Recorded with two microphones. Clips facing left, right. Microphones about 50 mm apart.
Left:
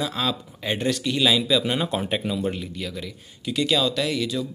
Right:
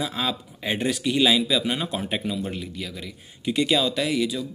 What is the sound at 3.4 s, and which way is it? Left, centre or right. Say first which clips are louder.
Speech: right 1 dB; right.